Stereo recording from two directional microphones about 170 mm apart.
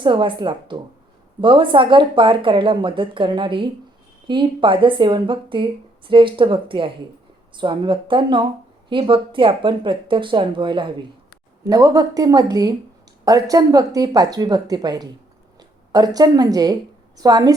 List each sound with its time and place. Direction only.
0.0 s speech: 30° right (ahead or behind)